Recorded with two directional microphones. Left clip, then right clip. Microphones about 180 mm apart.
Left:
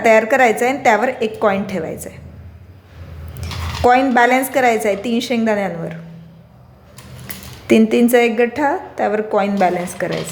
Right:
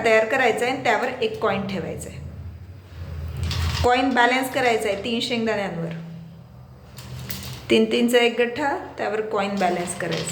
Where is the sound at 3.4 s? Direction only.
40° left (ahead or behind).